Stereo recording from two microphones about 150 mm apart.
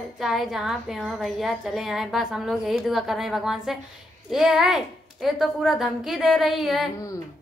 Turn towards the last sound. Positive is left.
turn(degrees=0)  # may be behind; listen again after turning